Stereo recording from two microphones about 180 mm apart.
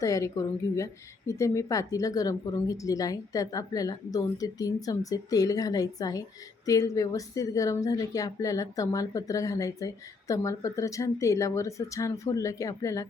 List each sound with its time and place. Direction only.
0.0 s speech: 20° left (ahead or behind)